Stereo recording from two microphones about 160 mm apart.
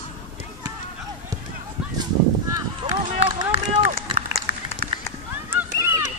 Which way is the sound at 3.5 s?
40° right (ahead or behind).